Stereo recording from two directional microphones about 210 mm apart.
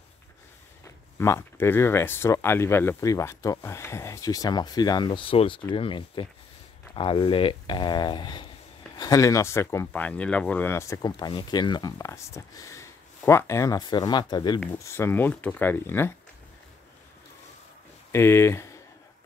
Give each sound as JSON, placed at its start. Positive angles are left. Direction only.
{"t": 1.1, "sound": "speech", "side_deg": 15}
{"t": 18.1, "sound": "speech", "side_deg": 10}